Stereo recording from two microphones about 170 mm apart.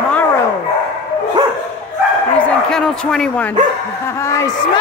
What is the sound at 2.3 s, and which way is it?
A woman's voice, 5° left (ahead or behind).